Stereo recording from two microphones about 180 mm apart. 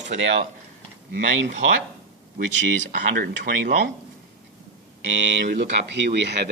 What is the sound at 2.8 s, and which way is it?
Speech, 60° right (ahead or behind).